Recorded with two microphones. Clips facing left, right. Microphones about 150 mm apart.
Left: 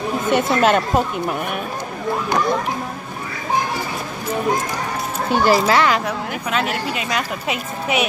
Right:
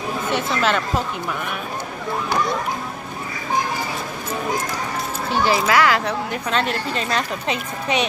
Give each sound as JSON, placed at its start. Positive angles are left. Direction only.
{"t": 0.3, "sound": "speech", "side_deg": 50}
{"t": 5.3, "sound": "speech", "side_deg": 45}
{"t": 5.7, "sound": "speech", "side_deg": 20}
{"t": 6.5, "sound": "a woman's voice", "side_deg": 5}